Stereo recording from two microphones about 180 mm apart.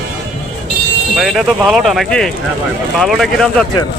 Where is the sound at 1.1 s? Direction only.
Centre (ahead or behind).